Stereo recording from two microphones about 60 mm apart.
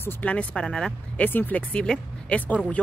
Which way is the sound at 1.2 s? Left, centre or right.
Left.